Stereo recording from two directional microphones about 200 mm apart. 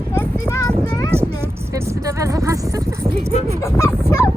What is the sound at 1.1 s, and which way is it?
Speech, 15° right (ahead or behind).